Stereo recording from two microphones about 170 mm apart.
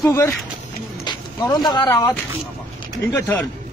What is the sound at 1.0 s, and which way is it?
Speech, 25° left (ahead or behind).